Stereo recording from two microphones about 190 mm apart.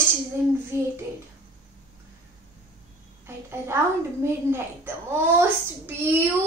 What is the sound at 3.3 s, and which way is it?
A woman's voice, 15° right (ahead or behind).